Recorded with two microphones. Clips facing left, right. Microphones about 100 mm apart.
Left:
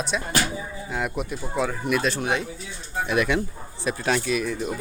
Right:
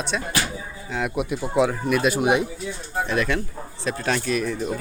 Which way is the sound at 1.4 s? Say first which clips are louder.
Right 6 dB; 15° right (ahead or behind).